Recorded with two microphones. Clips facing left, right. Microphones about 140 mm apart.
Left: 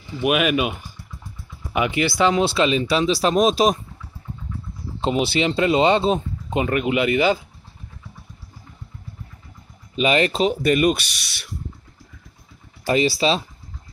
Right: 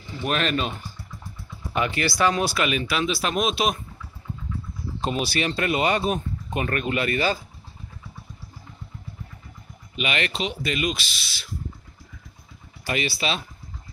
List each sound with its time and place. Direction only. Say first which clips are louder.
0.2 s speech: left 6 dB; 10° left (ahead or behind); by 3.7 s 40° left (ahead or behind)
5.0 s speech: left 5 dB; 20° left (ahead or behind)
9.9 s speech: left 9 dB; 35° left (ahead or behind)
12.8 s speech: left 8 dB; 30° left (ahead or behind)